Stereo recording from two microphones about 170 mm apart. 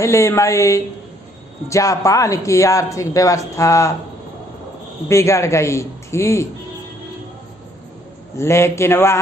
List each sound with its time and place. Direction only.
0.0 s a woman's voice: 15° left (ahead or behind)
5.0 s a woman's voice: 15° left (ahead or behind)
8.4 s a woman's voice: 15° left (ahead or behind)